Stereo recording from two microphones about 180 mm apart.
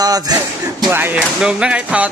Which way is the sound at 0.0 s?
20° right (ahead or behind).